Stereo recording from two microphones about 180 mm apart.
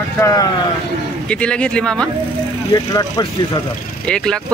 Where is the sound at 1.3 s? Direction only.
5° left (ahead or behind).